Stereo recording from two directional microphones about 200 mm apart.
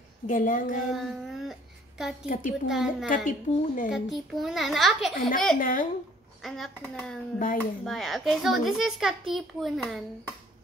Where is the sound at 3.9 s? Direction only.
Centre (ahead or behind).